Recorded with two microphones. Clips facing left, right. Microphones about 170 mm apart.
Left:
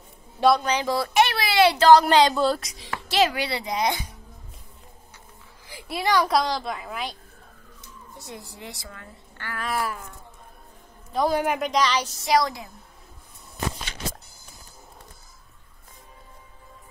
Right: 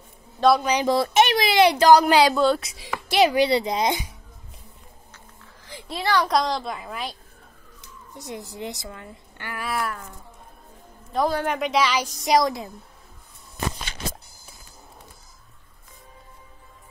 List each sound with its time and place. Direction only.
0.7 s speech: 15° right (ahead or behind); by 2.7 s centre (ahead or behind)
2.8 s speech: 15° right (ahead or behind)
5.7 s a woman's voice: 10° left (ahead or behind)
8.2 s speech: 15° right (ahead or behind)
9.7 s a woman's voice: centre (ahead or behind)
11.2 s a woman's voice: 15° left (ahead or behind)
11.5 s speech: centre (ahead or behind); by 12.6 s 20° right (ahead or behind)